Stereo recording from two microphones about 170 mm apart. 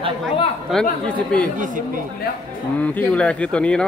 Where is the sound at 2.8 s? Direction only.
10° left (ahead or behind).